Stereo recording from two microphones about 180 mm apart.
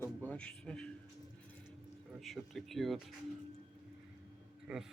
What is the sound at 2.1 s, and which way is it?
Speech, centre (ahead or behind).